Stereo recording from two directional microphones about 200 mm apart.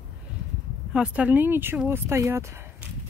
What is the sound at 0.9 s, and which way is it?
Speech, 5° right (ahead or behind).